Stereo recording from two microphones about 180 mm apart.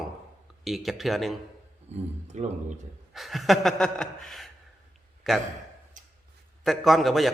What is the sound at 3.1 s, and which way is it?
A man's voice, centre (ahead or behind).